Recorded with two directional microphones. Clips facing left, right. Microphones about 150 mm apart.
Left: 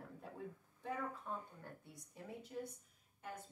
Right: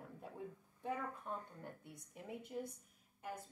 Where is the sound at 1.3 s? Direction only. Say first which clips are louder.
Right 3 dB; 15° right (ahead or behind).